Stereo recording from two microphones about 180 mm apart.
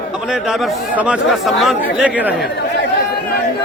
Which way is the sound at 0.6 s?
5° right (ahead or behind).